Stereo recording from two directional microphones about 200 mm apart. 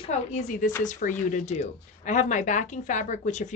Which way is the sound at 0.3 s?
40° left (ahead or behind).